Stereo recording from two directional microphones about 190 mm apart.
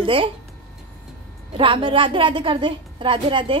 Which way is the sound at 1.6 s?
25° right (ahead or behind).